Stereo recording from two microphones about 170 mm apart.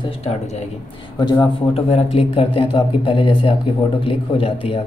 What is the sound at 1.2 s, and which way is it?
A man's voice, 25° left (ahead or behind).